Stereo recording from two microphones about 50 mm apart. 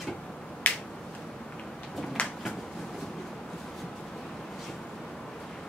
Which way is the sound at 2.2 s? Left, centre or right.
Left.